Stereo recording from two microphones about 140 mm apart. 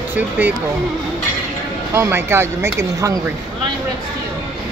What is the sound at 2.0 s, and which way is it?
Speech, 15° right (ahead or behind).